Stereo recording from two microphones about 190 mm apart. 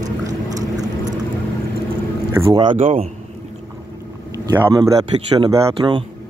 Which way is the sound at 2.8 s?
35° right (ahead or behind).